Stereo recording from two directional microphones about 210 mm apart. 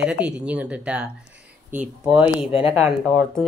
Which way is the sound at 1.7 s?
35° right (ahead or behind).